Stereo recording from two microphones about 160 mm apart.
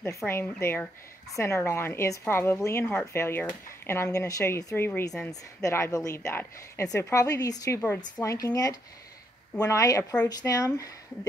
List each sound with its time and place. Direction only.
0.3 s a woman's voice: 15° left (ahead or behind)